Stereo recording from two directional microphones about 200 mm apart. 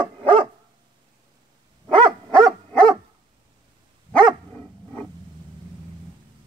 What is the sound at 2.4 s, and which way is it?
Dog, 25° right (ahead or behind).